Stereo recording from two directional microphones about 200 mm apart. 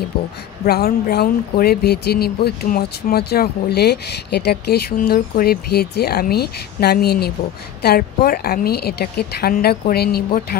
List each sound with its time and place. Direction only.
0.7 s speech: 50° left (ahead or behind)